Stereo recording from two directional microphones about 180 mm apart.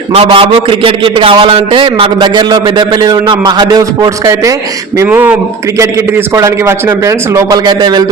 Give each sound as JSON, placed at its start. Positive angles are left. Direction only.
{"t": 0.1, "sound": "a man's voice", "side_deg": -30}